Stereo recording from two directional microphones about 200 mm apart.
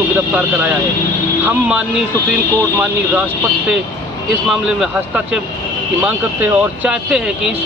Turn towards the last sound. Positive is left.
turn(degrees=-5)  # may be behind; listen again after turning